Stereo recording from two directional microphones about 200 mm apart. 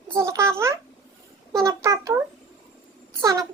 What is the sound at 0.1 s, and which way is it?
Babbling, 15° right (ahead or behind).